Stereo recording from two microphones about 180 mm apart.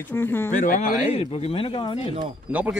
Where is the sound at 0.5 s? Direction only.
50° left (ahead or behind).